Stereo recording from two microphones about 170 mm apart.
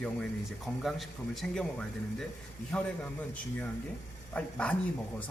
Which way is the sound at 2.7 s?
5° left (ahead or behind).